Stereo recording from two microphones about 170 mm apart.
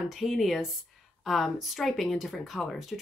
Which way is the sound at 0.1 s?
Centre (ahead or behind).